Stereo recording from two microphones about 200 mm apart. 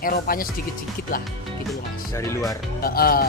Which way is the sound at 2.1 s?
15° left (ahead or behind).